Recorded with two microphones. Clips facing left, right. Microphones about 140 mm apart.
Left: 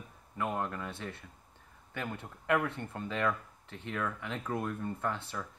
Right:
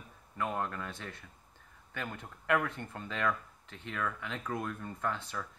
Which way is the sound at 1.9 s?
25° left (ahead or behind).